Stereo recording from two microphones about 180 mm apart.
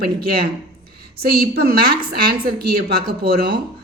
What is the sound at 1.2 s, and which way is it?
Speech, 60° right (ahead or behind).